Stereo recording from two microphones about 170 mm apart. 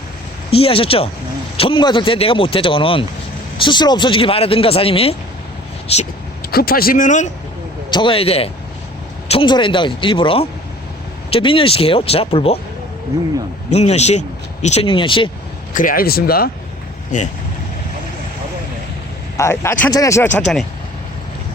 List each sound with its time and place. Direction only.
0.5 s speech: 35° left (ahead or behind)
6.5 s speech: 60° left (ahead or behind)
7.9 s speech: 30° left (ahead or behind)
13.7 s speech: 40° left (ahead or behind)
15.7 s speech: 55° left (ahead or behind)
19.4 s speech: 15° left (ahead or behind)
20.4 s speech: centre (ahead or behind)